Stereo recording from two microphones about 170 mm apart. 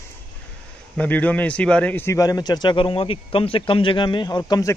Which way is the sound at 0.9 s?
10° left (ahead or behind).